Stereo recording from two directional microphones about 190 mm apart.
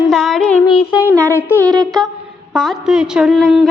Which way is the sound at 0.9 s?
10° right (ahead or behind).